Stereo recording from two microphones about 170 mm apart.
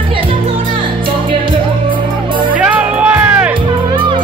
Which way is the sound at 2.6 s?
10° right (ahead or behind).